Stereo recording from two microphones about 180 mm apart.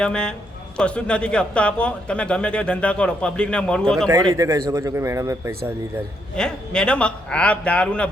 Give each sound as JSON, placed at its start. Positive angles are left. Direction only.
{"t": 0.0, "sound": "speech", "side_deg": 5}
{"t": 4.4, "sound": "speech", "side_deg": -15}
{"t": 6.3, "sound": "speech", "side_deg": 5}